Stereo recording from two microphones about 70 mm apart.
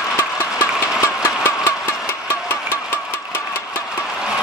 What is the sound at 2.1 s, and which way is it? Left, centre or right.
Engine, left.